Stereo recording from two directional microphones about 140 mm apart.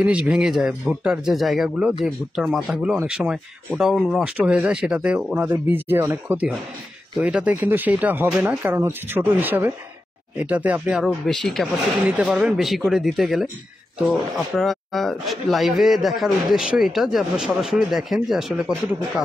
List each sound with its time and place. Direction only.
0.0 s a man's voice: 5° right (ahead or behind)